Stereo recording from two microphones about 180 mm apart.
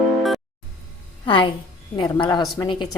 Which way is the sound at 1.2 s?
30° left (ahead or behind).